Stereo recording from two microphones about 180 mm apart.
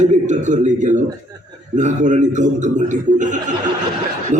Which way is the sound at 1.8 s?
40° right (ahead or behind).